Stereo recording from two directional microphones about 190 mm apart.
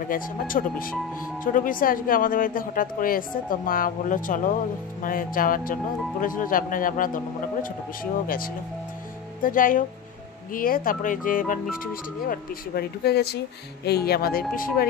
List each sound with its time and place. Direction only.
0.1 s speech: 45° left (ahead or behind)